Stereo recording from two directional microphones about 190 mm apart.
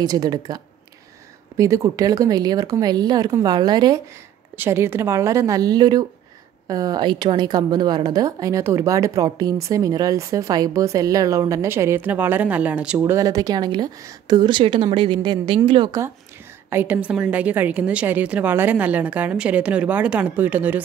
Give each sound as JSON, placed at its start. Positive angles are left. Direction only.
{"t": 0.0, "sound": "speech", "side_deg": -20}
{"t": 1.6, "sound": "a woman's voice", "side_deg": -15}
{"t": 13.0, "sound": "speech", "side_deg": -15}
{"t": 16.7, "sound": "a woman's voice", "side_deg": -10}